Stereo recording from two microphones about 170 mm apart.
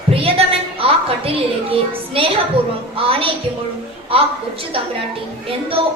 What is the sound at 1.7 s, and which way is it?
A woman's voice, 35° right (ahead or behind).